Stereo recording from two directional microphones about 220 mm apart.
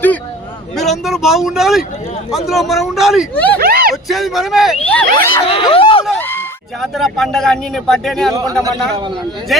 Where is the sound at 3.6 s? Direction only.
45° right (ahead or behind).